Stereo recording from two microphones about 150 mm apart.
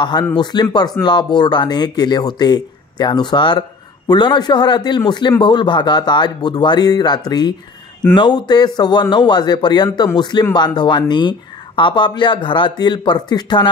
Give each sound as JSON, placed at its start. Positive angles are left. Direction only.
{"t": 0.0, "sound": "speech", "side_deg": 30}